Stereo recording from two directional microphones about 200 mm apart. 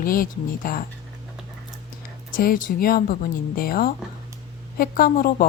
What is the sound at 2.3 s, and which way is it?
Speech, 45° left (ahead or behind).